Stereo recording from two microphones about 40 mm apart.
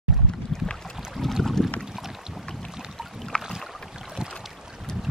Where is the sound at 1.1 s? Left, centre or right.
Centre.